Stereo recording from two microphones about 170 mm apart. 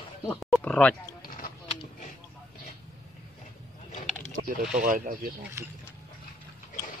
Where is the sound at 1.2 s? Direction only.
55° left (ahead or behind).